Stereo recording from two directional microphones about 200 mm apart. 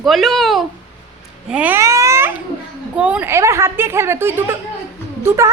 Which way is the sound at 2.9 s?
5° right (ahead or behind).